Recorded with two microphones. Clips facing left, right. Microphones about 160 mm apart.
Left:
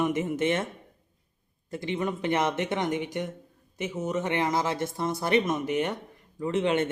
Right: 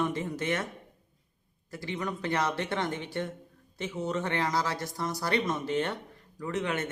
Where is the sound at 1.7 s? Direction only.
25° left (ahead or behind).